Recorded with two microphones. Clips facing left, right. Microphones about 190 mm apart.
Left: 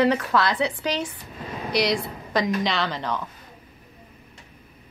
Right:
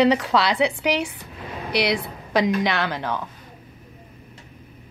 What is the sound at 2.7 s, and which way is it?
Speech, 10° right (ahead or behind).